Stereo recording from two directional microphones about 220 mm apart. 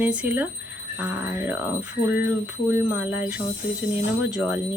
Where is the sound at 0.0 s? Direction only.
5° right (ahead or behind).